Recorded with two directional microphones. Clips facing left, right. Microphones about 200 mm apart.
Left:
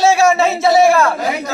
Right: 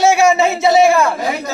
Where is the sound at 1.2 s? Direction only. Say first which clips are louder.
Even; centre (ahead or behind).